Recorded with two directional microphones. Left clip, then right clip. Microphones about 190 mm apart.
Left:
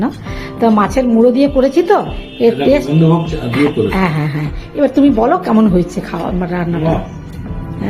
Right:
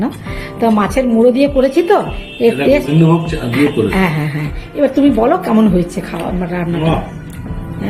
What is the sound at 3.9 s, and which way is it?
A woman's voice, 10° left (ahead or behind).